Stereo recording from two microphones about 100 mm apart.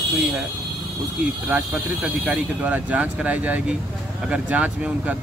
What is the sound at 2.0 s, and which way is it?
Speech, 15° right (ahead or behind).